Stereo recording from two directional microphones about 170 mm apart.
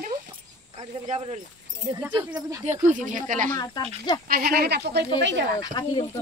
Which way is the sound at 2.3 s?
20° right (ahead or behind).